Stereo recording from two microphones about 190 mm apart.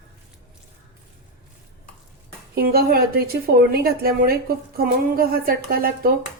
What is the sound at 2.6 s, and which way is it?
A woman's voice, 50° right (ahead or behind).